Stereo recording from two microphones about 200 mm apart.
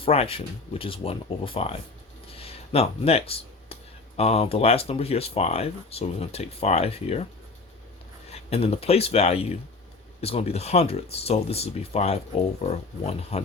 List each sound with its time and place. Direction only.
0.0 s speech: 30° left (ahead or behind)
2.2 s a sound: 30° left (ahead or behind)
4.2 s speech: 30° left (ahead or behind)
8.3 s speech: 30° left (ahead or behind)